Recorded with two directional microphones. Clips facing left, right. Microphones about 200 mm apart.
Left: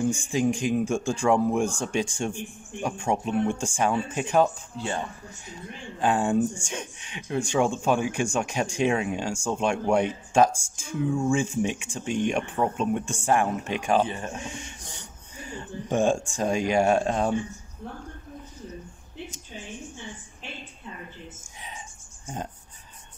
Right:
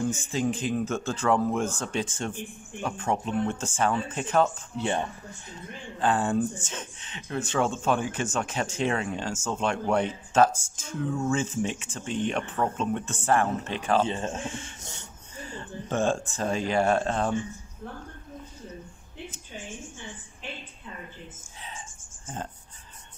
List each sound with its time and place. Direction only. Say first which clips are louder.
0.0 s speech: left 3 dB; 15° left (ahead or behind)
4.7 s speech: right 5 dB; 20° right (ahead or behind)
5.9 s speech: left 2 dB; 10° left (ahead or behind)
14.0 s speech: right 3 dB; 25° right (ahead or behind)
14.3 s speech: right 2 dB; 15° left (ahead or behind)
21.5 s cricket: even; 15° left (ahead or behind)